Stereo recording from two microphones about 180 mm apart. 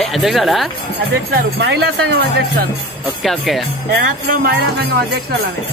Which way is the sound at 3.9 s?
55° right (ahead or behind).